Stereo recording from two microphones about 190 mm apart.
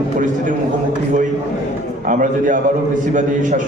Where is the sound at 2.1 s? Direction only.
45° right (ahead or behind).